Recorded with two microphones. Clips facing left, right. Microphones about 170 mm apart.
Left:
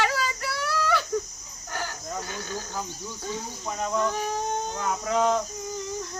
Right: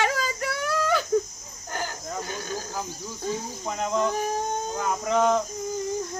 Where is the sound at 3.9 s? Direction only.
20° right (ahead or behind).